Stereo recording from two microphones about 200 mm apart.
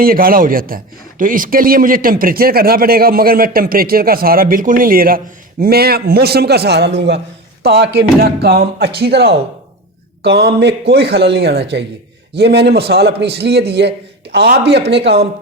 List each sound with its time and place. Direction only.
0.0 s speech: 45° right (ahead or behind)